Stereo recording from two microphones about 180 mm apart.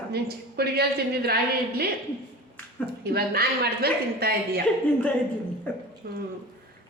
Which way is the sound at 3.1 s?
60° right (ahead or behind).